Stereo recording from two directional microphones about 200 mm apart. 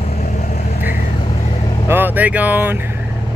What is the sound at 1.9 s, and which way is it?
Speech, 10° right (ahead or behind).